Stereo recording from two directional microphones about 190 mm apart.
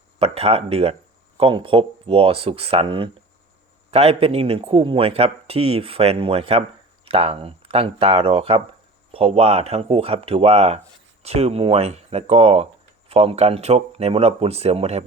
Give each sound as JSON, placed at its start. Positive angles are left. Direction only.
{"t": 0.2, "sound": "speech", "side_deg": -30}